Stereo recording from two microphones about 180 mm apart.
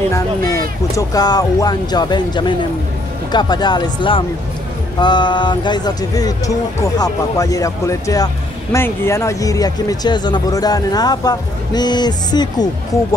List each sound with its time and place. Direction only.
0.1 s speech: 20° left (ahead or behind)